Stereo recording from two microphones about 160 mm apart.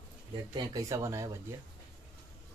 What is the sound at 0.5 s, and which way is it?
Speech, 20° right (ahead or behind).